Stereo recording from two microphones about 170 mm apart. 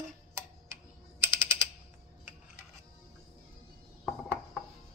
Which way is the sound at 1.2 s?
15° right (ahead or behind).